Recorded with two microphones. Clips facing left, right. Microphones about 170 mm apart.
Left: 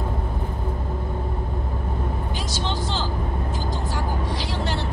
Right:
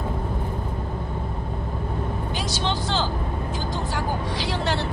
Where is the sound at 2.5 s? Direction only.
70° right (ahead or behind).